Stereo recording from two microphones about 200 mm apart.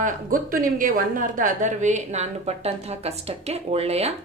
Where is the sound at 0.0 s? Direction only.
45° right (ahead or behind).